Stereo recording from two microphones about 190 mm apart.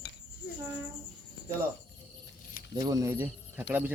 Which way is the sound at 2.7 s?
20° right (ahead or behind).